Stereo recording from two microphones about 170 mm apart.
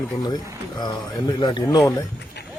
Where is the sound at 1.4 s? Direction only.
25° left (ahead or behind).